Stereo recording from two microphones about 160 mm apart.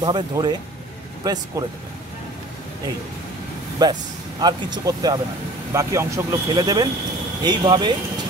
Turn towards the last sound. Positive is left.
turn(degrees=-30)  # may be behind; listen again after turning